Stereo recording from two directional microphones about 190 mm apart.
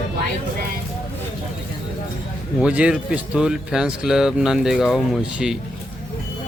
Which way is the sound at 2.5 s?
5° right (ahead or behind).